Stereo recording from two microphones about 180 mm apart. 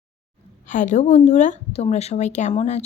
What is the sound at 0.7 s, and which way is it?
Speech, 45° left (ahead or behind).